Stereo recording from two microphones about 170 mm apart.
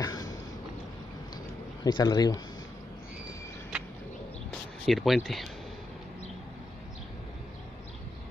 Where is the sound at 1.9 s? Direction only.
25° left (ahead or behind).